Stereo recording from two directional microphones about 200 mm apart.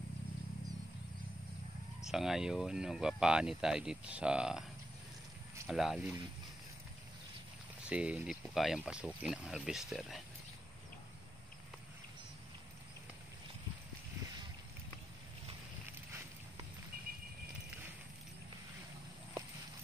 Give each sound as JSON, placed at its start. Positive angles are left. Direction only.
{"t": 2.0, "sound": "speech", "side_deg": 0}
{"t": 5.7, "sound": "speech", "side_deg": 0}
{"t": 7.9, "sound": "speech", "side_deg": -5}